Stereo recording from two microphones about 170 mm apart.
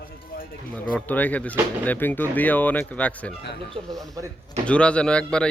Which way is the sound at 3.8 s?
30° right (ahead or behind).